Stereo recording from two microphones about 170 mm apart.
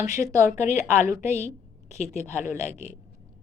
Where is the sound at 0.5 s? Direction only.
45° left (ahead or behind).